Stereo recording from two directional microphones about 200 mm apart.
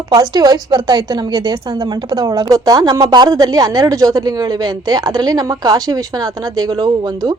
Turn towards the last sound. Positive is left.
turn(degrees=-20)  # may be behind; listen again after turning